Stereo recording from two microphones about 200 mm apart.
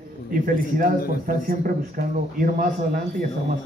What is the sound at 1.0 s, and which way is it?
A man's voice, 45° right (ahead or behind).